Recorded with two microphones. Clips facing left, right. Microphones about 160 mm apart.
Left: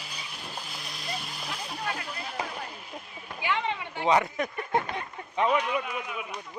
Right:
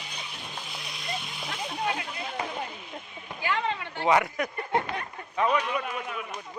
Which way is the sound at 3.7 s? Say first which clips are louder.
Right 1 dB; 15° left (ahead or behind).